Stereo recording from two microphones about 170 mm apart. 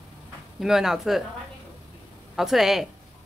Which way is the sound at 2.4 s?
Centre (ahead or behind).